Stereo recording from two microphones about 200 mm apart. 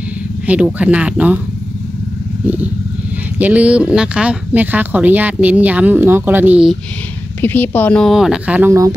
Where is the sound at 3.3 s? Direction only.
10° right (ahead or behind).